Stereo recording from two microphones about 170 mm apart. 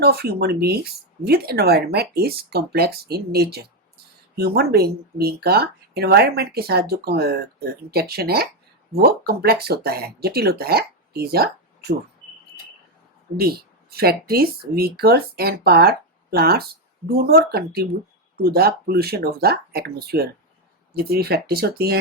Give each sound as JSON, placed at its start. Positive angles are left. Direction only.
{"t": 0.0, "sound": "speech", "side_deg": -70}
{"t": 13.4, "sound": "speech", "side_deg": -65}